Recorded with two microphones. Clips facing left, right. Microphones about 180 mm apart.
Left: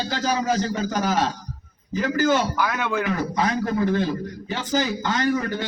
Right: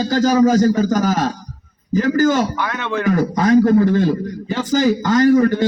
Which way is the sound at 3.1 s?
45° right (ahead or behind).